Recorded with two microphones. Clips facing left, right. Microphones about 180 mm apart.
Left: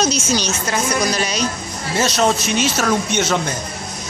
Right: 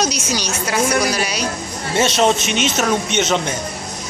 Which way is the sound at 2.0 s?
25° right (ahead or behind).